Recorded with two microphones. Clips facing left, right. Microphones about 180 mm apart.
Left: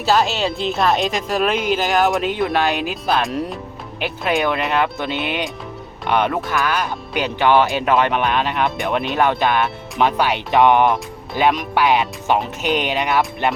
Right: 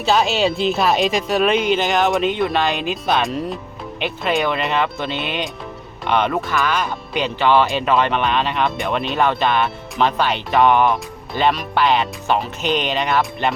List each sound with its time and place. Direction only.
0.0 s speech: centre (ahead or behind)